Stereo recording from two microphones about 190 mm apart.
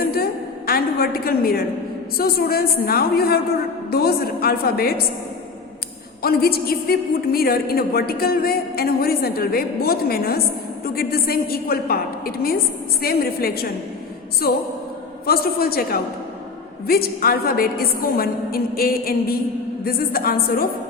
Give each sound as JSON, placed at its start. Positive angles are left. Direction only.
{"t": 0.0, "sound": "a sound", "side_deg": 55}
{"t": 2.1, "sound": "a woman's voice", "side_deg": 55}
{"t": 6.2, "sound": "a woman's voice", "side_deg": 55}